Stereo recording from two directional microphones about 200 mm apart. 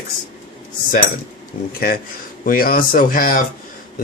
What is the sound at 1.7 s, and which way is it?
Speech, 50° left (ahead or behind).